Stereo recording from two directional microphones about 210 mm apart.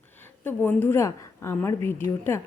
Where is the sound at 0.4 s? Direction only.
10° left (ahead or behind).